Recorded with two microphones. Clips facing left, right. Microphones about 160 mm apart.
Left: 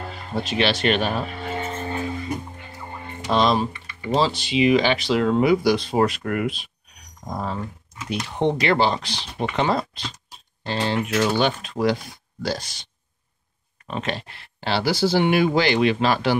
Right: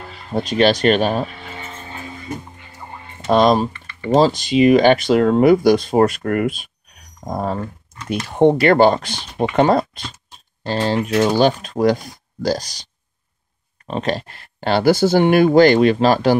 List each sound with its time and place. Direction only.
0.4 s speech: 40° right (ahead or behind)
3.3 s speech: 45° right (ahead or behind)
3.7 s typing: 15° left (ahead or behind)
4.1 s speech: 45° right (ahead or behind)